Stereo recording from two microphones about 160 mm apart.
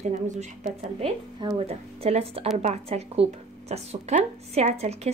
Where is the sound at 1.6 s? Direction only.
40° right (ahead or behind).